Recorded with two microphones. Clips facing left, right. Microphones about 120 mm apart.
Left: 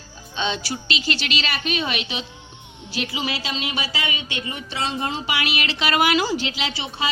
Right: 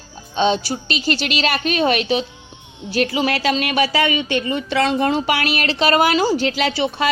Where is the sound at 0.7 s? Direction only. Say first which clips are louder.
Right 5 dB; 40° right (ahead or behind).